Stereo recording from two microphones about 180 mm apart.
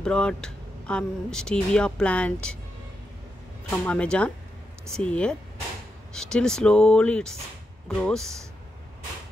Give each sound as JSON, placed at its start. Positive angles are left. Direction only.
{"t": 0.0, "sound": "speech", "side_deg": 5}
{"t": 3.7, "sound": "speech", "side_deg": 5}